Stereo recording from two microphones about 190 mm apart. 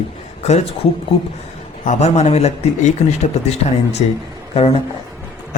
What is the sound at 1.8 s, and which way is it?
Speech, 35° left (ahead or behind).